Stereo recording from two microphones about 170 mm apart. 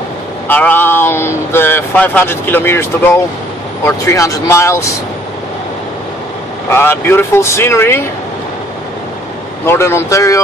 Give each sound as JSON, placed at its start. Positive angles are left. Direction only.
{"t": 0.5, "sound": "speech", "side_deg": 10}
{"t": 6.7, "sound": "speech", "side_deg": 15}
{"t": 9.7, "sound": "speech", "side_deg": 15}